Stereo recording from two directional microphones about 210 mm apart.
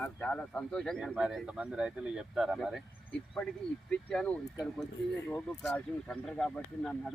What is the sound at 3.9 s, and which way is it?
Speech, 5° left (ahead or behind).